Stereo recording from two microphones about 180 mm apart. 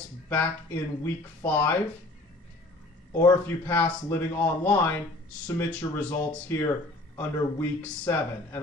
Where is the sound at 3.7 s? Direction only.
10° left (ahead or behind).